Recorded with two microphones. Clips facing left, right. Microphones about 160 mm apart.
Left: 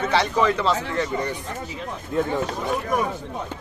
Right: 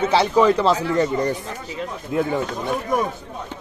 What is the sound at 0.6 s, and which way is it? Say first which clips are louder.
Speech: right 5 dB; 35° right (ahead or behind).